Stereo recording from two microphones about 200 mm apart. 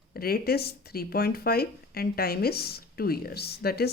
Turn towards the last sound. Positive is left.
turn(degrees=50)  # may be behind; listen again after turning